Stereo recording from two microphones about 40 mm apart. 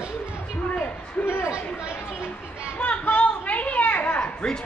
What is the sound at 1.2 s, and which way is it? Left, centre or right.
Speech, left.